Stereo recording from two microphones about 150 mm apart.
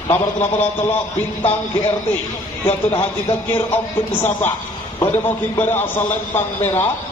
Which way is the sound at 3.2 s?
45° left (ahead or behind).